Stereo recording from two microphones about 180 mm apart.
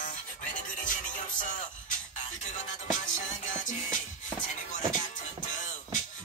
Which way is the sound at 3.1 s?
45° left (ahead or behind).